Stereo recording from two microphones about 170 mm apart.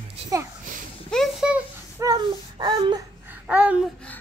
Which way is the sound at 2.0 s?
25° right (ahead or behind).